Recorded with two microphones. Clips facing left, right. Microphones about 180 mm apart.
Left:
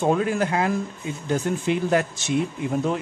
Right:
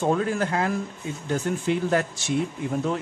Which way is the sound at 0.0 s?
15° left (ahead or behind).